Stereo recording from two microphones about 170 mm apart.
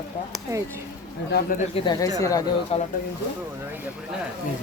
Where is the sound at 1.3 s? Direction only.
55° left (ahead or behind).